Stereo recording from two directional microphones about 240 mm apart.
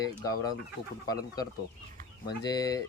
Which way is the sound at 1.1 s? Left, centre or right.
Centre.